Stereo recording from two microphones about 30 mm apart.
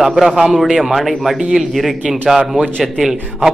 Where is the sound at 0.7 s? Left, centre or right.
Centre.